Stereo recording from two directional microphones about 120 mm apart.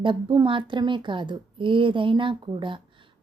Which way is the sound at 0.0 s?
45° right (ahead or behind).